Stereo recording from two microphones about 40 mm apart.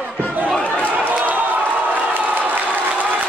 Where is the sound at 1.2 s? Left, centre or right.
Right.